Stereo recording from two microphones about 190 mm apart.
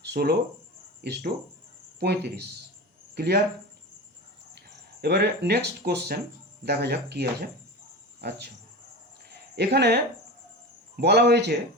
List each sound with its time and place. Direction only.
0.0 s speech: 55° right (ahead or behind)
4.5 s speech: 60° right (ahead or behind)
9.3 s speech: 60° right (ahead or behind)